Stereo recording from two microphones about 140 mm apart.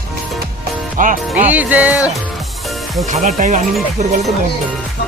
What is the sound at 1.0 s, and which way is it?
Speech, 75° right (ahead or behind).